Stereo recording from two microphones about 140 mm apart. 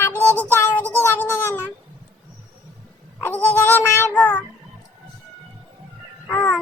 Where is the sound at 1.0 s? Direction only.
15° left (ahead or behind).